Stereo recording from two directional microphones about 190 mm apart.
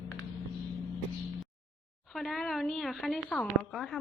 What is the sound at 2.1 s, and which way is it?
Speech, centre (ahead or behind).